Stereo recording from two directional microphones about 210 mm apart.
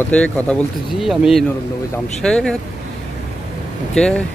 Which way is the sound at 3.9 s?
5° left (ahead or behind).